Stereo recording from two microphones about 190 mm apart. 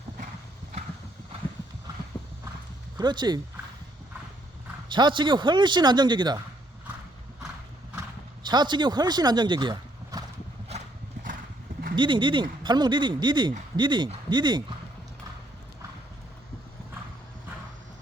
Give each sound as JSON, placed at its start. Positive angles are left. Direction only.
{"t": 3.0, "sound": "speech", "side_deg": -20}
{"t": 4.9, "sound": "speech", "side_deg": -25}
{"t": 8.4, "sound": "speech", "side_deg": -25}
{"t": 10.7, "sound": "horse", "side_deg": -40}
{"t": 11.9, "sound": "speech", "side_deg": -25}